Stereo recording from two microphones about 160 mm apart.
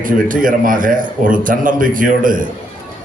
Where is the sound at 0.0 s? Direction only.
55° right (ahead or behind).